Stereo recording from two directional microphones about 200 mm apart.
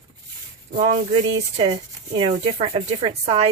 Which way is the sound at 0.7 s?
35° right (ahead or behind).